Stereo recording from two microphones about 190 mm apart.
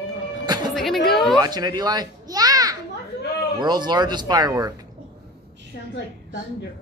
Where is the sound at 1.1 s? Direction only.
Centre (ahead or behind).